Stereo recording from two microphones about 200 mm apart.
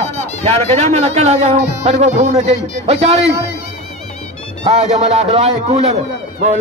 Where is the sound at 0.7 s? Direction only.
30° right (ahead or behind).